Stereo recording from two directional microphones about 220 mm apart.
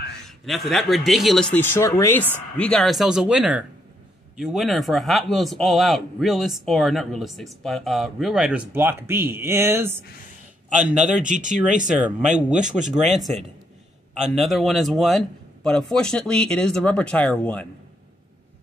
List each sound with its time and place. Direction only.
0.5 s a man's voice: centre (ahead or behind)
11.1 s speech: 35° right (ahead or behind)
12.3 s a man's voice: 5° right (ahead or behind)